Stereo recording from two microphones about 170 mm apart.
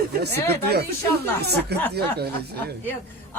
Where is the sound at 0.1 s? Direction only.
70° right (ahead or behind).